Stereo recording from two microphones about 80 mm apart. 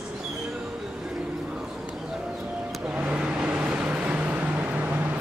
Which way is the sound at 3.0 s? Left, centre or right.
Centre.